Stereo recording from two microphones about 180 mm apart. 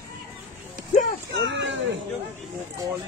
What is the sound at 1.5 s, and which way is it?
Speech, 90° right.